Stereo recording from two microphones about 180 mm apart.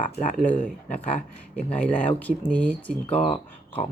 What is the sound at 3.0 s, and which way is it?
Speech, 35° left (ahead or behind).